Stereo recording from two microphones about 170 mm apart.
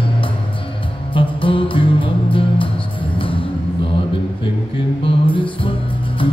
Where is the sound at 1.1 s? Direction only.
30° left (ahead or behind).